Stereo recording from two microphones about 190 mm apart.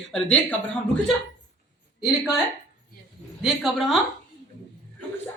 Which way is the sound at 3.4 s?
Centre (ahead or behind).